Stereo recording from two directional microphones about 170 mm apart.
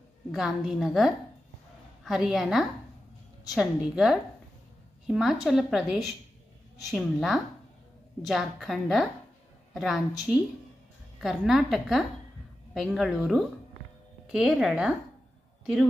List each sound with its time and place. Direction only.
0.3 s a woman's voice: centre (ahead or behind)